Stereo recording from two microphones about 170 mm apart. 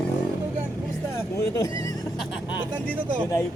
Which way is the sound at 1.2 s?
20° left (ahead or behind).